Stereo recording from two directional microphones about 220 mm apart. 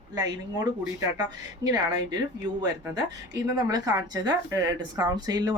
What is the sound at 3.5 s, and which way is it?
Speech, 15° right (ahead or behind).